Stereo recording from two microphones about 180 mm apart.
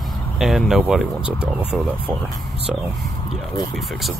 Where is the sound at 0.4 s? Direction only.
Centre (ahead or behind).